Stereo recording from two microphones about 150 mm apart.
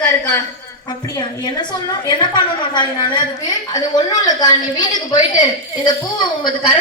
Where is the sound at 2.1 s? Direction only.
30° left (ahead or behind).